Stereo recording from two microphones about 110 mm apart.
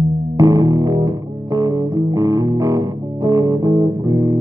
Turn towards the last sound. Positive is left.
turn(degrees=-35)  # may be behind; listen again after turning